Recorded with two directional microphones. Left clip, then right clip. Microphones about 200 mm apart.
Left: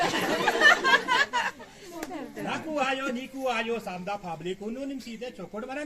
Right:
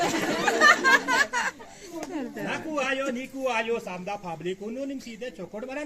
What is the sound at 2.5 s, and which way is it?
A man's voice, 10° right (ahead or behind).